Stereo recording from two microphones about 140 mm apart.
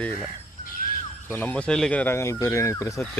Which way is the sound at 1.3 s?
10° left (ahead or behind).